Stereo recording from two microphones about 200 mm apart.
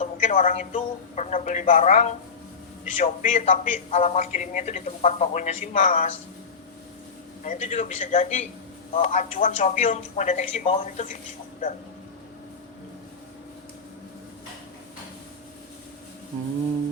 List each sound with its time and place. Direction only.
0.0 s a man's voice: 35° left (ahead or behind)
7.4 s a man's voice: 40° left (ahead or behind)